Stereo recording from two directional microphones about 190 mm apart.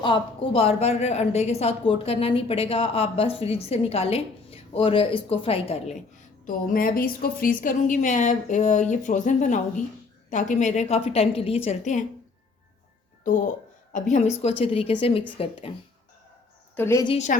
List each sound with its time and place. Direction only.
0.0 s a woman's voice: 25° left (ahead or behind)
6.4 s a woman's voice: 50° left (ahead or behind)
13.2 s a woman's voice: 45° left (ahead or behind)
16.7 s a woman's voice: 15° left (ahead or behind)
17.1 s a woman's voice: 35° left (ahead or behind)